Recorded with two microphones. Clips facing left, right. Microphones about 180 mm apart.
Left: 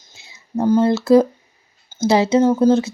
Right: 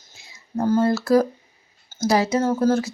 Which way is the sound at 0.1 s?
25° left (ahead or behind).